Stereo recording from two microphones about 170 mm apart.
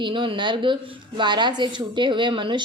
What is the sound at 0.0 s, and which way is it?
A woman's voice, 30° right (ahead or behind).